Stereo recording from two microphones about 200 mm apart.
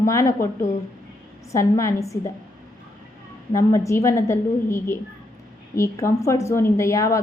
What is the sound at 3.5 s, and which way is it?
A woman's voice, 15° left (ahead or behind).